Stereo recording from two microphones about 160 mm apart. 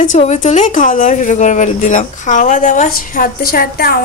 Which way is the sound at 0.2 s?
45° left (ahead or behind).